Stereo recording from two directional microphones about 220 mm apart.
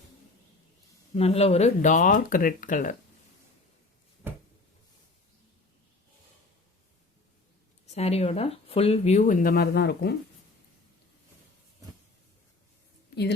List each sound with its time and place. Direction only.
1.1 s speech: 30° left (ahead or behind)
7.9 s speech: 30° left (ahead or behind); by 10.2 s 50° left (ahead or behind)